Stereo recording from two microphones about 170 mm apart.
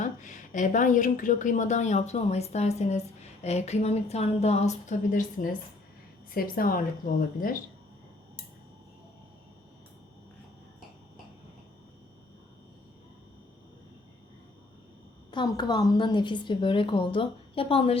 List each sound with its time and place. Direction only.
0.0 s a woman's voice: 50° left (ahead or behind)
15.3 s a woman's voice: 25° left (ahead or behind)